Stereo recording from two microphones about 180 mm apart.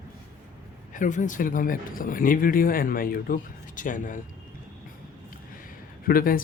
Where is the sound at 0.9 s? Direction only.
45° left (ahead or behind).